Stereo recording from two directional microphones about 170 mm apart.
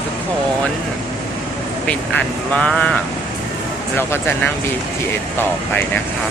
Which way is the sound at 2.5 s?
5° left (ahead or behind).